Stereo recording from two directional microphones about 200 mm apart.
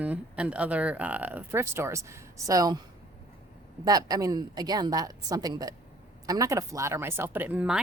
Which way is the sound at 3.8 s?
20° right (ahead or behind).